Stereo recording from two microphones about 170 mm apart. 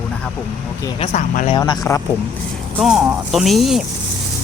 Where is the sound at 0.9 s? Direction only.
35° left (ahead or behind).